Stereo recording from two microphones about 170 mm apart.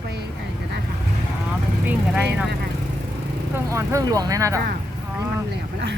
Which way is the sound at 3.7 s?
20° right (ahead or behind).